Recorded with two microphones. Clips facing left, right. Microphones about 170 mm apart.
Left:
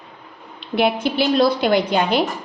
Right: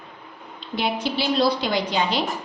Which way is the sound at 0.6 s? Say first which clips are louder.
Left 6 dB; 60° left (ahead or behind).